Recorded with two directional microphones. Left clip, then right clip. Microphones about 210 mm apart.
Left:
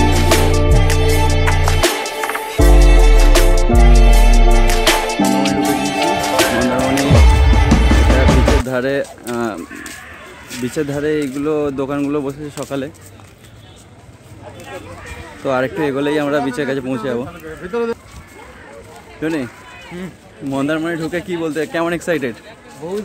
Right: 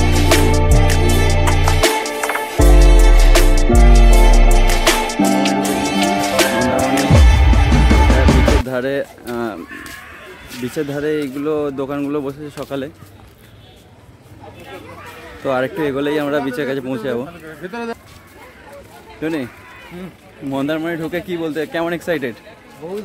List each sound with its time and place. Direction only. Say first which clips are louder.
0.1 s music: even; centre (ahead or behind)
9.3 s a sound: left 2 dB; 5° left (ahead or behind)
10.6 s speech: left 2 dB; centre (ahead or behind)
15.4 s speech: left 1 dB; centre (ahead or behind)
17.6 s speech: left 6 dB; 45° right (ahead or behind)
19.2 s speech: left 1 dB; 5° right (ahead or behind)
20.5 s speech: left 1 dB; 10° right (ahead or behind)